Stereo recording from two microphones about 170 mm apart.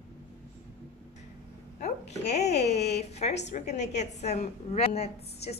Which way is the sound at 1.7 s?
45° left (ahead or behind).